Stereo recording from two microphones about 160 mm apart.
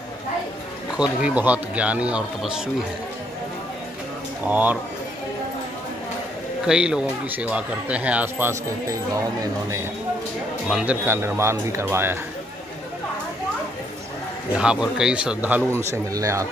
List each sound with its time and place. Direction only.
0.9 s speech: 5° right (ahead or behind)
4.5 s speech: 10° right (ahead or behind)
6.6 s speech: 5° right (ahead or behind)
10.7 s speech: 5° right (ahead or behind)
14.6 s a man's voice: 5° right (ahead or behind)